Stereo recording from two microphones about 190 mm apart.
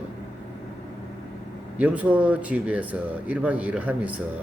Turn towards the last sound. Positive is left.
turn(degrees=-5)  # may be behind; listen again after turning